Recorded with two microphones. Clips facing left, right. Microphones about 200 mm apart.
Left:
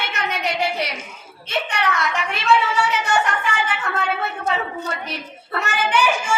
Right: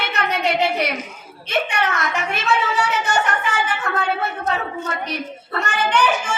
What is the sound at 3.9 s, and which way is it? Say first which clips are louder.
Speech: right 2 dB; 45° right (ahead or behind).